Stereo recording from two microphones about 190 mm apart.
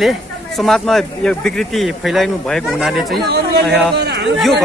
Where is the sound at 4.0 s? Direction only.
60° right (ahead or behind).